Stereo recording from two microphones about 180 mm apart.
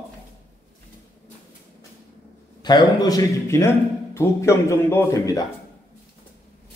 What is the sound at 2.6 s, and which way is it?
A man's voice, 25° left (ahead or behind).